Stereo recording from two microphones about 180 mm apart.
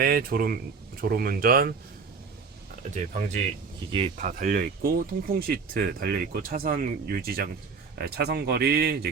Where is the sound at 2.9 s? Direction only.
45° right (ahead or behind).